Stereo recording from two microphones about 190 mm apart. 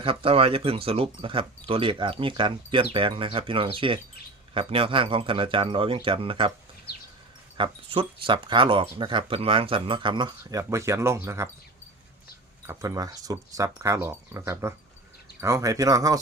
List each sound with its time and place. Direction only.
0.0 s speech: 30° right (ahead or behind)
7.5 s speech: 25° right (ahead or behind)
12.6 s speech: 15° right (ahead or behind)